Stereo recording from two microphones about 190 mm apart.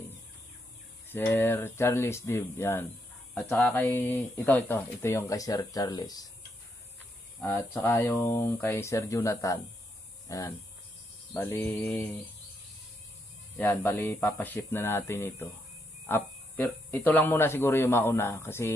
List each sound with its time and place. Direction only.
1.0 s speech: 10° left (ahead or behind)
7.3 s speech: 10° left (ahead or behind)
11.7 s mantra: 5° left (ahead or behind)
13.6 s speech: 10° left (ahead or behind)